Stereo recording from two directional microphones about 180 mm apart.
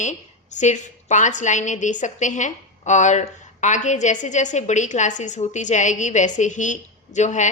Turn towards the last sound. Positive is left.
turn(degrees=40)  # may be behind; listen again after turning